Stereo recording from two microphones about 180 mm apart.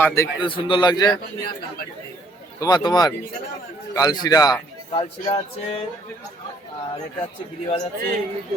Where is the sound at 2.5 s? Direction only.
20° left (ahead or behind).